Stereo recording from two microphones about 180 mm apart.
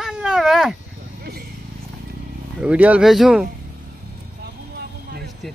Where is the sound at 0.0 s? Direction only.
5° right (ahead or behind).